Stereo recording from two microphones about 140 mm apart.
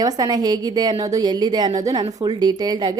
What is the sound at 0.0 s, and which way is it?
Speech, 30° right (ahead or behind).